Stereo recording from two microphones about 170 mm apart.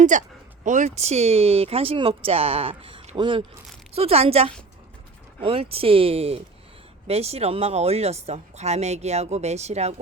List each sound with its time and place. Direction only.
0.0 s speech: 45° right (ahead or behind)